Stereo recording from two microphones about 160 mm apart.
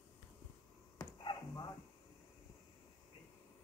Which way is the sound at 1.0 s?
25° left (ahead or behind).